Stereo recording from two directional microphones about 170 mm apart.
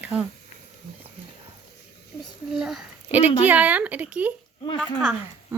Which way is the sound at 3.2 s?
35° left (ahead or behind).